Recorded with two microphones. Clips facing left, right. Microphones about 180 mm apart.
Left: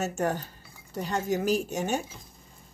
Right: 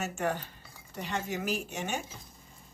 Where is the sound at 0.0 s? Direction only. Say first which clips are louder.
Left 4 dB; 40° left (ahead or behind).